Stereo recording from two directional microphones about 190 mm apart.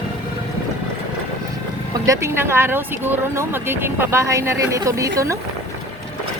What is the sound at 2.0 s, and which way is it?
Speech, 15° right (ahead or behind).